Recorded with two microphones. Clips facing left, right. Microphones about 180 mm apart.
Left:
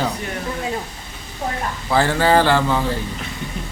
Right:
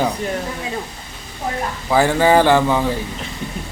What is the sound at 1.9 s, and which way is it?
Speech, 15° right (ahead or behind).